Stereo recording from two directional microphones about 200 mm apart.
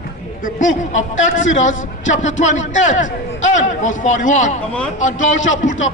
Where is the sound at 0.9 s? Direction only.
75° left (ahead or behind).